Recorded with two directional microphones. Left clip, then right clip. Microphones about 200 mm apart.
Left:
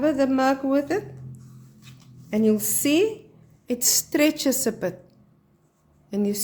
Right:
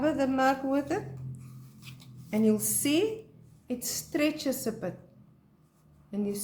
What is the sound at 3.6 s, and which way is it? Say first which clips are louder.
Speech: left 12 dB; 45° left (ahead or behind).